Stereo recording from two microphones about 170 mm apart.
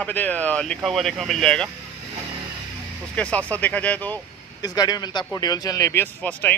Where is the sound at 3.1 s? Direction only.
5° left (ahead or behind).